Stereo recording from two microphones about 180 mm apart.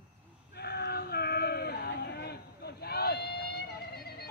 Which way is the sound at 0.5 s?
60° left (ahead or behind).